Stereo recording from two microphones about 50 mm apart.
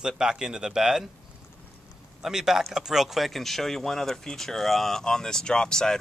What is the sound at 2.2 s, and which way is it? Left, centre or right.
Speech, centre.